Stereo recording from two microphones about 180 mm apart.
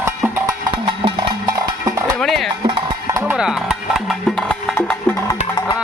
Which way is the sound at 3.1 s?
10° right (ahead or behind).